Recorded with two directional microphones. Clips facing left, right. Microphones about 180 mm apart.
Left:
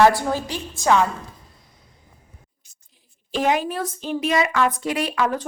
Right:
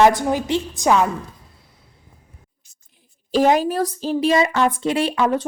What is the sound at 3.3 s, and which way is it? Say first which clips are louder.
A woman's voice: right 5 dB; 40° right (ahead or behind).